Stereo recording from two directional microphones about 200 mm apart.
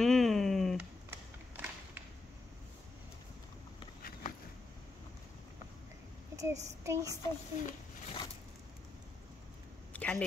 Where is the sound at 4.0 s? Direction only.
45° left (ahead or behind).